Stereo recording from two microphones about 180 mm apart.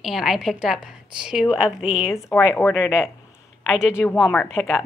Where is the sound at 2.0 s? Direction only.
15° left (ahead or behind).